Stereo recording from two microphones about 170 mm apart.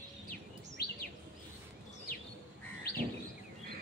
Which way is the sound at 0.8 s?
70° left (ahead or behind).